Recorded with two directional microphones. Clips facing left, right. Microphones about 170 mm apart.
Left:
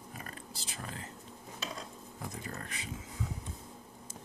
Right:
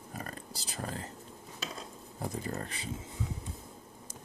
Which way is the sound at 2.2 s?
35° right (ahead or behind).